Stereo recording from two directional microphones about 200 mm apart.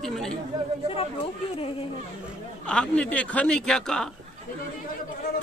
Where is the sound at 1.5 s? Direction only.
25° left (ahead or behind).